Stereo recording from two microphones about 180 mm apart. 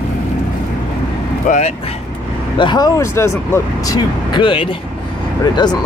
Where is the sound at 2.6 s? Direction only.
20° left (ahead or behind).